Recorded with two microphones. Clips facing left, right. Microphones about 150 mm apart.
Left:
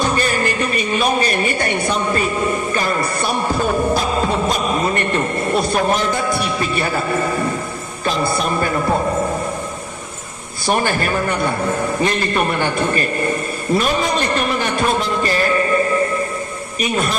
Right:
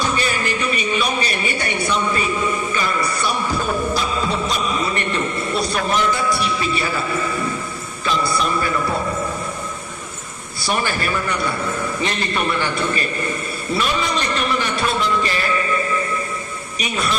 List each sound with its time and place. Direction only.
0.0 s a sound: 45° left (ahead or behind)
3.9 s music: 45° left (ahead or behind)
8.0 s a man's voice: 50° left (ahead or behind)
10.7 s a man's voice: 45° left (ahead or behind)
13.7 s music: 45° left (ahead or behind)
16.8 s a man's voice: 45° left (ahead or behind)